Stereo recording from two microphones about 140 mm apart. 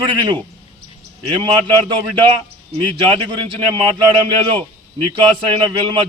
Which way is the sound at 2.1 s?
35° right (ahead or behind).